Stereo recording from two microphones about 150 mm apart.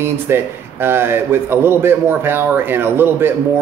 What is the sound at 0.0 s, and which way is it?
A man's voice, 15° right (ahead or behind).